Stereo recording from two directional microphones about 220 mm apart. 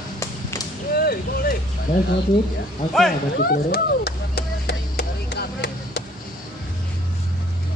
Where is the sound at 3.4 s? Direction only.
45° left (ahead or behind).